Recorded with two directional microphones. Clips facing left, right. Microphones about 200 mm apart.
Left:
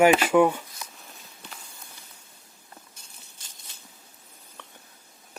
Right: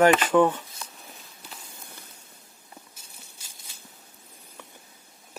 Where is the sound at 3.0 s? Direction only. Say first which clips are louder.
Right 1 dB; 5° right (ahead or behind).